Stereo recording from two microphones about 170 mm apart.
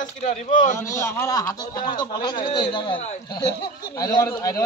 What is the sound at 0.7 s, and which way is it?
A man's voice, 15° left (ahead or behind).